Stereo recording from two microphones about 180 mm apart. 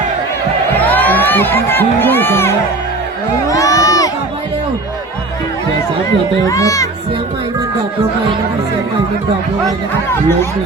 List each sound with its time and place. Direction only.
0.9 s speech: 10° left (ahead or behind)
3.5 s crowd: 20° left (ahead or behind)
6.4 s speech: 20° left (ahead or behind)